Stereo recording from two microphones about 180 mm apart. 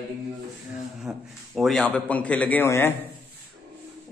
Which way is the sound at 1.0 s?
Centre (ahead or behind).